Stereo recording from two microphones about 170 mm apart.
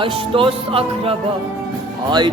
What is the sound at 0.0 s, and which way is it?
Speech, 30° right (ahead or behind).